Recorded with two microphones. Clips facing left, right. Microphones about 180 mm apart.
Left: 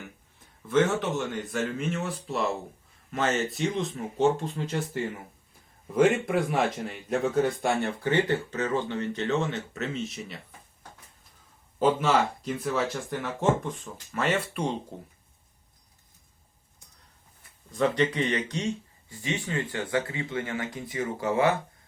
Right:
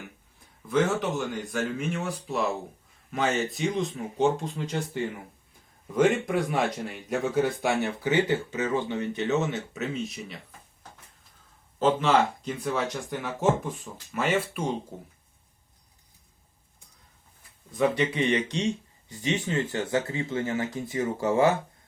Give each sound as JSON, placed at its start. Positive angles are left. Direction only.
{"t": 0.7, "sound": "speech", "side_deg": 0}
{"t": 11.8, "sound": "speech", "side_deg": 10}
{"t": 17.7, "sound": "speech", "side_deg": -10}